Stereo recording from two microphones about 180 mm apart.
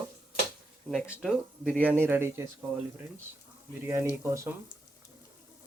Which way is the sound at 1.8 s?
10° right (ahead or behind).